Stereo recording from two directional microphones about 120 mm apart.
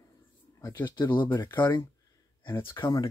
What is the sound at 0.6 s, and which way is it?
Speech, 25° left (ahead or behind).